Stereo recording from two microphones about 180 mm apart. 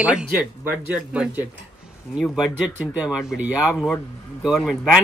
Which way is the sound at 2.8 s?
5° right (ahead or behind).